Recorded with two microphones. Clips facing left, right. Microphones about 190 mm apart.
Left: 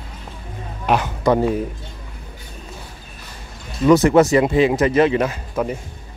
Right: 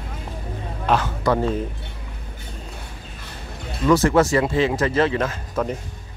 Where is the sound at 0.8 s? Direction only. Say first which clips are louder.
Left 3 dB; 15° left (ahead or behind).